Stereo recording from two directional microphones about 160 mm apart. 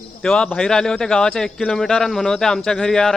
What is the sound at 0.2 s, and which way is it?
A man's voice, 5° left (ahead or behind).